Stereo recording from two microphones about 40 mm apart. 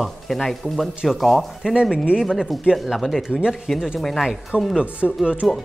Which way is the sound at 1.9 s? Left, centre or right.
Right.